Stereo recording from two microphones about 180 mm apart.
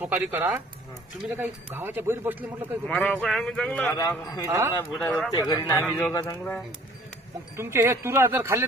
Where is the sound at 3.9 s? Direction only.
20° left (ahead or behind).